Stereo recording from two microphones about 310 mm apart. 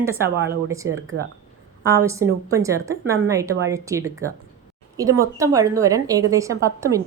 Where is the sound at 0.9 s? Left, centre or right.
Right.